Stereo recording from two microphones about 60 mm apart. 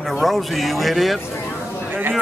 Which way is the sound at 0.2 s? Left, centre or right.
Centre.